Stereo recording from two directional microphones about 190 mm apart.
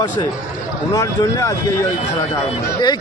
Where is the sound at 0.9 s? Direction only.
20° left (ahead or behind).